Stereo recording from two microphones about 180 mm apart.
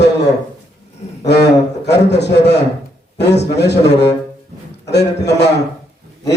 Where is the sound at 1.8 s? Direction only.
70° left (ahead or behind).